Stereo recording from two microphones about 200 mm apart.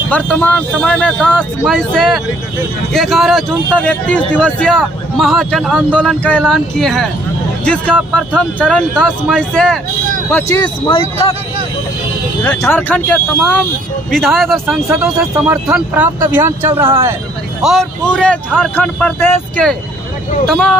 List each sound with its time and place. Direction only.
0.1 s speech: 5° left (ahead or behind)
10.3 s speech: 20° left (ahead or behind)
12.4 s speech: 10° left (ahead or behind); by 17.1 s 15° right (ahead or behind)
17.6 s speech: centre (ahead or behind)